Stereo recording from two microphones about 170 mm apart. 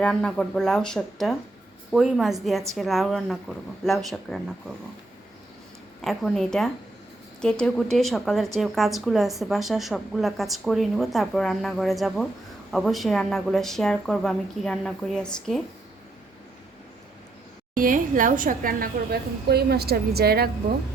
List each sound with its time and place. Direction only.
0.0 s a woman's voice: 5° left (ahead or behind)
6.0 s a woman's voice: centre (ahead or behind)
17.7 s a woman's voice: 55° right (ahead or behind)